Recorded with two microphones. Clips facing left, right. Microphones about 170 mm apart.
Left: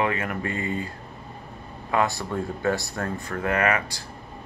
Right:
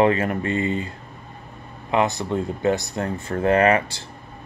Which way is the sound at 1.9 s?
20° right (ahead or behind).